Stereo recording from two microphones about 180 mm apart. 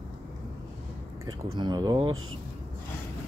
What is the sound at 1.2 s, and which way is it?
Speech, 25° right (ahead or behind).